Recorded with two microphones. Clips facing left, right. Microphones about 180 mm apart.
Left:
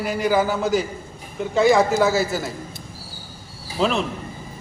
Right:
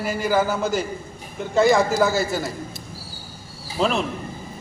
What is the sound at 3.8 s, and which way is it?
Speech, centre (ahead or behind).